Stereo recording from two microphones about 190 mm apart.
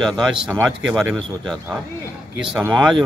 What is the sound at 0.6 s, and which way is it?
Speech, 10° right (ahead or behind).